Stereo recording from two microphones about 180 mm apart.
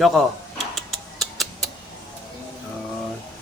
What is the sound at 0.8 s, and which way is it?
Tick-tock, centre (ahead or behind).